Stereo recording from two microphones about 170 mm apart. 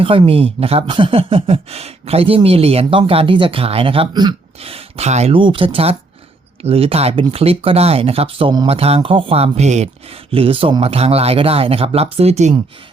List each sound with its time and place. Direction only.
0.0 s speech: 30° right (ahead or behind)